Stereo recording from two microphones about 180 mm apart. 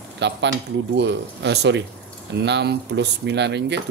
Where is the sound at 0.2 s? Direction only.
75° right (ahead or behind).